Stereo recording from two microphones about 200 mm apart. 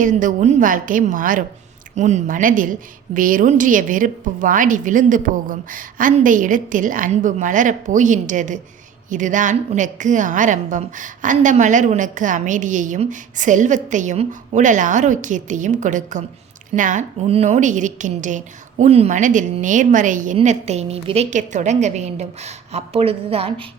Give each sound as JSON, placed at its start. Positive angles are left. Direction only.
{"t": 0.0, "sound": "a woman's voice", "side_deg": -40}